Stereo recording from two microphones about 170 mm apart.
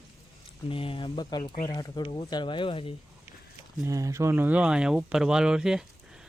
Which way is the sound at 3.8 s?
20° right (ahead or behind).